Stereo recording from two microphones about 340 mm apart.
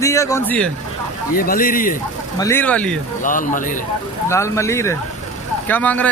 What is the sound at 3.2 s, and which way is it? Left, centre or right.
Speech, left.